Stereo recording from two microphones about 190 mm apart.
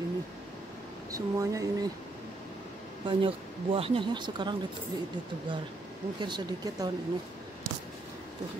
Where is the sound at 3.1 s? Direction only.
30° right (ahead or behind).